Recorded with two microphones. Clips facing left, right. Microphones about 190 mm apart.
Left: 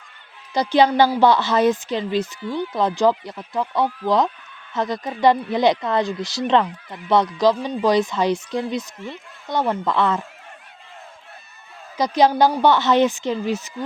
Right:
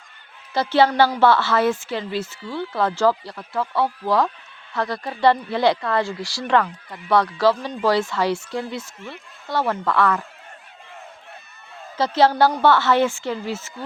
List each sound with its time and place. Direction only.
0.5 s a woman's voice: 15° left (ahead or behind)
11.9 s a woman's voice: 15° left (ahead or behind)